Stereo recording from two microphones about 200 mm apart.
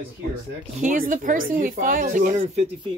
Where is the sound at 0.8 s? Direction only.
40° right (ahead or behind).